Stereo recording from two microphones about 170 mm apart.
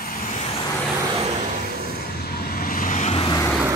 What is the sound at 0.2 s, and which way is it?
Vehicle, 45° left (ahead or behind).